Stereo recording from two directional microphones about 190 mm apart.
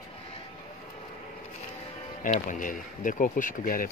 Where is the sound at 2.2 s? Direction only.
45° left (ahead or behind).